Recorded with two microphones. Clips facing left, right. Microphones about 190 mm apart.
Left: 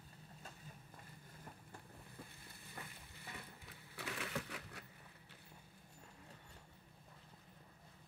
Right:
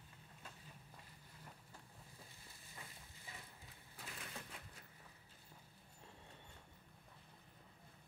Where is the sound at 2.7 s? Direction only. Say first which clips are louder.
Left 4 dB; 65° left (ahead or behind).